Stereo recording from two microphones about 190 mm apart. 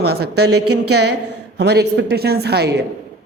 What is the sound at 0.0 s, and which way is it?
A woman's voice, 60° right (ahead or behind).